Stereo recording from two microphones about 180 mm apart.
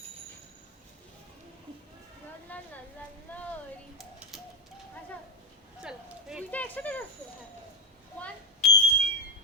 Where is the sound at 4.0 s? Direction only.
Centre (ahead or behind).